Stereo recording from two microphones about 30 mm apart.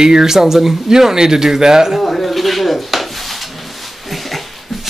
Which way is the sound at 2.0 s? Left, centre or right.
Centre.